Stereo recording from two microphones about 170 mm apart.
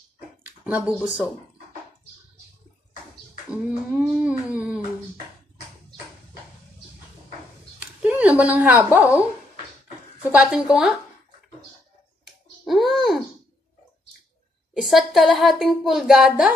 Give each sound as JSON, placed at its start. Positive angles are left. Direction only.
{"t": 0.7, "sound": "a sound", "side_deg": -5}
{"t": 3.4, "sound": "a sound", "side_deg": -5}
{"t": 8.0, "sound": "a woman's voice", "side_deg": -10}
{"t": 10.3, "sound": "speech", "side_deg": -5}
{"t": 12.6, "sound": "speech", "side_deg": 0}
{"t": 14.7, "sound": "speech", "side_deg": 0}